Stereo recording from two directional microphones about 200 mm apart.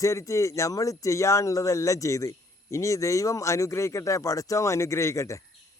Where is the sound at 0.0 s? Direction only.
15° left (ahead or behind).